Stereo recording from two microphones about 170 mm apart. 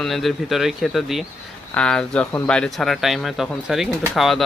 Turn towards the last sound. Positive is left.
turn(degrees=0)  # may be behind; listen again after turning